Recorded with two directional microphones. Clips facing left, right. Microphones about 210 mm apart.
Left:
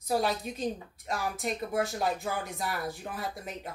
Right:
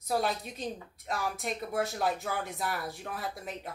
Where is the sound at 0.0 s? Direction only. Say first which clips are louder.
Left 2 dB; centre (ahead or behind).